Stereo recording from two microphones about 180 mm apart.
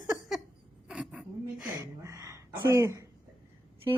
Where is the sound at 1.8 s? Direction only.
15° right (ahead or behind).